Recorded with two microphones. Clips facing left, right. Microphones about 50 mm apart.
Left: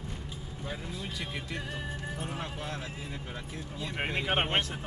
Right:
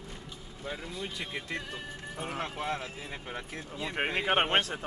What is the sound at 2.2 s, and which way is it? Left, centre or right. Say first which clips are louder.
Speech: right 2 dB; right.